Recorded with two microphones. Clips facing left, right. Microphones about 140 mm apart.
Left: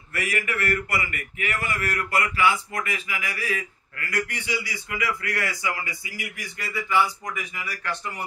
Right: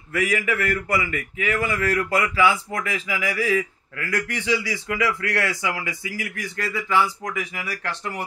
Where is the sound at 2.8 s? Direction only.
90° right.